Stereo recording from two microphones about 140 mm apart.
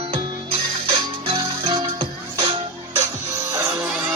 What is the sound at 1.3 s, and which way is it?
Music, 40° right (ahead or behind).